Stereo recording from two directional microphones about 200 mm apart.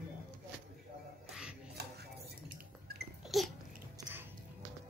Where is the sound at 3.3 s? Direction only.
Centre (ahead or behind).